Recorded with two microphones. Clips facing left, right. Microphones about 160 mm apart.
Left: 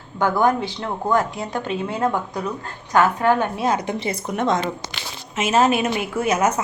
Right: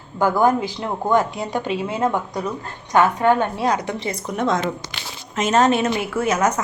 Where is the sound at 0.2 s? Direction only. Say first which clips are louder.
Right 2 dB; 5° right (ahead or behind).